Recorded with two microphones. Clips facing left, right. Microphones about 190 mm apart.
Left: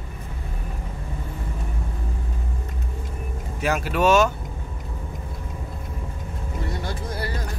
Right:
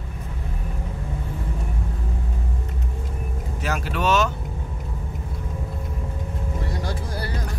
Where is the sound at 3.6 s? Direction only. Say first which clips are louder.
Left 4 dB; 10° left (ahead or behind).